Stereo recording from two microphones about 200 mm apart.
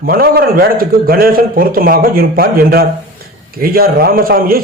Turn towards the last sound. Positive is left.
turn(degrees=-45)  # may be behind; listen again after turning